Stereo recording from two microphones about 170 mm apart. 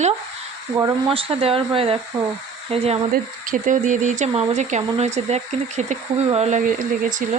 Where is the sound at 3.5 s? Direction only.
50° right (ahead or behind).